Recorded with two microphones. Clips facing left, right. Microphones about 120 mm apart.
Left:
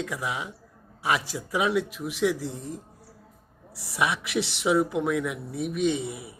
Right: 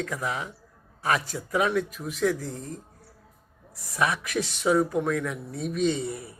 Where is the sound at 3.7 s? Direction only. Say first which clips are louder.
Left 3 dB; 75° left (ahead or behind).